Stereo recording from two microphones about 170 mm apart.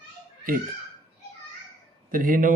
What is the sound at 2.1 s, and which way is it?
Speech, 55° right (ahead or behind).